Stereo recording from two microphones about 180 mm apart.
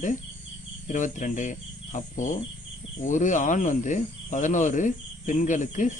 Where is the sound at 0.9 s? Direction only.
45° left (ahead or behind).